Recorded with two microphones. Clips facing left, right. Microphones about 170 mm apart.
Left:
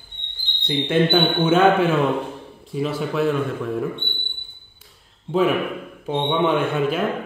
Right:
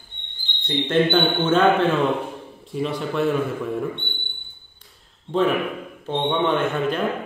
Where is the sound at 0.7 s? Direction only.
10° left (ahead or behind).